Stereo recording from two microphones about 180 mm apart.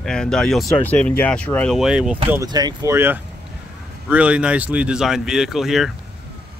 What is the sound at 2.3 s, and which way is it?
Speech, 20° right (ahead or behind).